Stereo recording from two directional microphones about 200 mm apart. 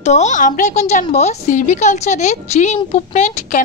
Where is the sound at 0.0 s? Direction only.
35° left (ahead or behind).